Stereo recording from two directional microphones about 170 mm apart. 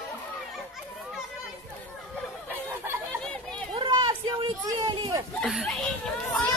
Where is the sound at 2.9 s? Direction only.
15° right (ahead or behind).